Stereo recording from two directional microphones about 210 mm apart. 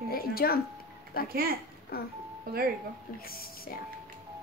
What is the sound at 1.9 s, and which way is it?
Speech, 45° left (ahead or behind).